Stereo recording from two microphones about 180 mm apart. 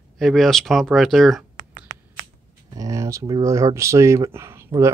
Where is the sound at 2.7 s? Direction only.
20° right (ahead or behind).